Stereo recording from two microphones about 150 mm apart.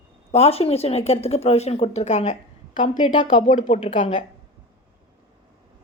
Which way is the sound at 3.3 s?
60° left (ahead or behind).